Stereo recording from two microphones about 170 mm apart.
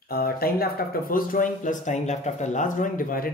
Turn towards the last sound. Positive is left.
turn(degrees=55)  # may be behind; listen again after turning